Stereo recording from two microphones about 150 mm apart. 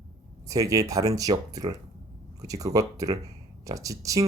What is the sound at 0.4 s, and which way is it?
Speech, 20° right (ahead or behind).